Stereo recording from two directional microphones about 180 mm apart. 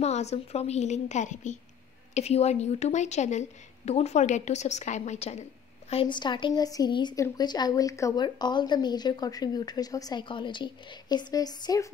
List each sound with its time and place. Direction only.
0.0 s a woman's voice: 40° left (ahead or behind); by 11.9 s 20° left (ahead or behind)